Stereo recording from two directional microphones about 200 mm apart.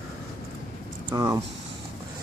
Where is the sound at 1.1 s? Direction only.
15° right (ahead or behind).